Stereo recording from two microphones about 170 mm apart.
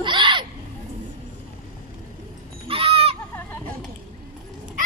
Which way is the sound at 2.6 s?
35° right (ahead or behind).